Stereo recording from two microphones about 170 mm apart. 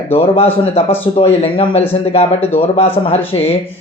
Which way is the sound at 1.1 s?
35° left (ahead or behind).